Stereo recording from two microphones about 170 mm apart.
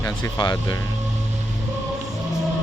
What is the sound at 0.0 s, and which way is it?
Speech, 20° left (ahead or behind).